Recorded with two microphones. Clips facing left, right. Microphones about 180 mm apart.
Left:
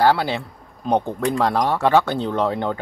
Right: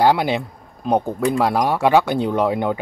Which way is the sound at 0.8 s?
5° right (ahead or behind).